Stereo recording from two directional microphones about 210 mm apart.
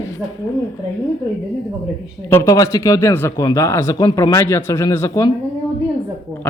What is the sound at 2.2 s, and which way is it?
Speech, 15° left (ahead or behind).